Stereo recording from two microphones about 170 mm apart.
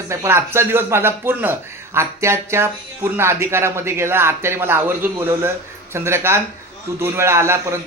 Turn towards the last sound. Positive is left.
turn(degrees=-15)  # may be behind; listen again after turning